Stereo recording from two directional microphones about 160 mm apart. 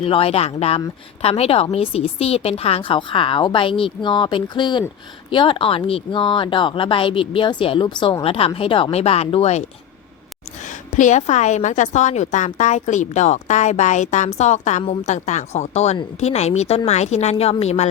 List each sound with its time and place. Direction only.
0.0 s speech: 35° left (ahead or behind)
10.7 s a woman's voice: 50° left (ahead or behind)